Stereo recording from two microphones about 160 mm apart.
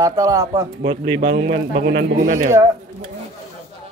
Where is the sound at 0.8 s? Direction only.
55° right (ahead or behind).